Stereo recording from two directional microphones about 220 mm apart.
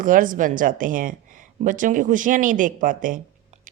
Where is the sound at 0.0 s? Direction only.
40° right (ahead or behind).